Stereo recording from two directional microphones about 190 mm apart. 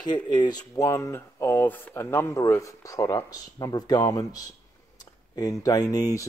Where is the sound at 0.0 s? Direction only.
20° left (ahead or behind).